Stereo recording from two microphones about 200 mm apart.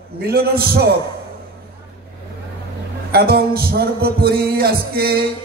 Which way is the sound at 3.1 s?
50° right (ahead or behind).